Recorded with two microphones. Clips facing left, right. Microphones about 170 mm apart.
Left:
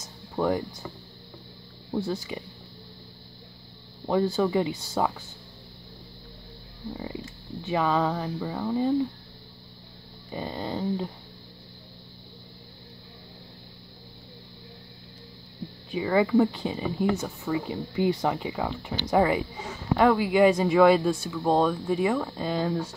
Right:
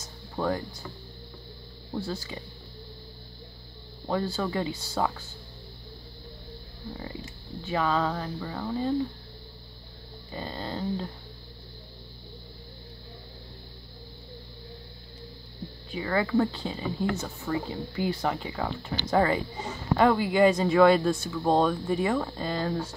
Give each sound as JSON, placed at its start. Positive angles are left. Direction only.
{"t": 0.0, "sound": "music", "side_deg": 15}
{"t": 1.9, "sound": "speech", "side_deg": 20}
{"t": 4.1, "sound": "a woman's voice", "side_deg": 15}
{"t": 7.6, "sound": "a woman's voice", "side_deg": 15}
{"t": 10.3, "sound": "a woman's voice", "side_deg": 15}
{"t": 15.9, "sound": "a woman's voice", "side_deg": 15}